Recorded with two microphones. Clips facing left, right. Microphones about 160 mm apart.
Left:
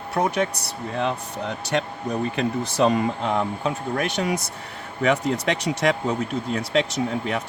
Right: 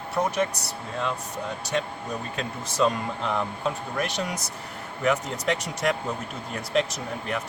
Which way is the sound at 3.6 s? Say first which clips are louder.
Left 3 dB; 60° left (ahead or behind).